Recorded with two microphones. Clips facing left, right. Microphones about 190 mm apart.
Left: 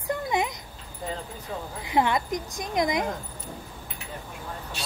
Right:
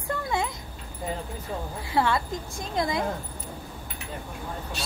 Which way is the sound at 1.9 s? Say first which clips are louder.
Left 1 dB; 20° left (ahead or behind).